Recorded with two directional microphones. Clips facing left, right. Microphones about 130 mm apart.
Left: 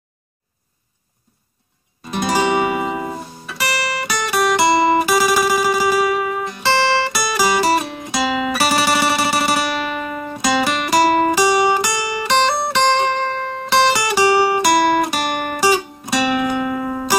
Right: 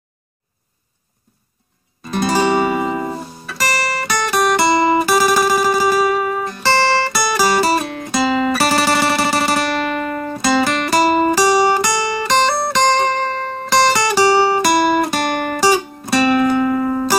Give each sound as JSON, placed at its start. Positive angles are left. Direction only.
{"t": 2.2, "sound": "music", "side_deg": 10}
{"t": 3.5, "sound": "music", "side_deg": -40}
{"t": 4.1, "sound": "guitar", "side_deg": 10}
{"t": 5.3, "sound": "music", "side_deg": 10}
{"t": 5.9, "sound": "music", "side_deg": -35}
{"t": 7.1, "sound": "music", "side_deg": 15}
{"t": 12.8, "sound": "music", "side_deg": -40}
{"t": 13.7, "sound": "music", "side_deg": 10}